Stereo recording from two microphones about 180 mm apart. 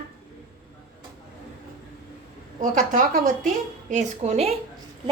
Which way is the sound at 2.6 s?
50° right (ahead or behind).